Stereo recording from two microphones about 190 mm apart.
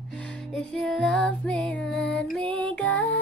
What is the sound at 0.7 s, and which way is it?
Music, centre (ahead or behind).